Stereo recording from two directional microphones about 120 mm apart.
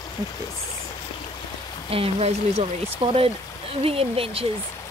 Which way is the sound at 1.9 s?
55° right (ahead or behind).